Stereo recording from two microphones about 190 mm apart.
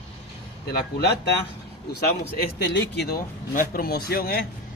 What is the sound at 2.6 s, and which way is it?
Speech, 65° left (ahead or behind).